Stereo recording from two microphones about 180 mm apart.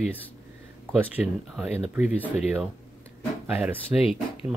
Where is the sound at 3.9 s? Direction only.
30° left (ahead or behind).